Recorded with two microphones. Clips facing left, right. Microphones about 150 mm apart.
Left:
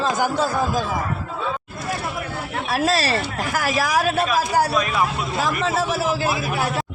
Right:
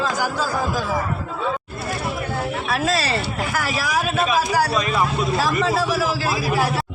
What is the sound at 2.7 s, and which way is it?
A man's voice, 35° left (ahead or behind).